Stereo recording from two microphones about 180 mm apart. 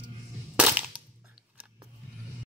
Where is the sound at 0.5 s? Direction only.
5° right (ahead or behind).